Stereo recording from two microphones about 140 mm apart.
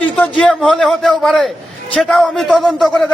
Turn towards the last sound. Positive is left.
turn(degrees=5)  # may be behind; listen again after turning